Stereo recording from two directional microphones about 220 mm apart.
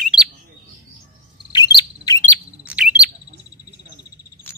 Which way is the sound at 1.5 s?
20° left (ahead or behind).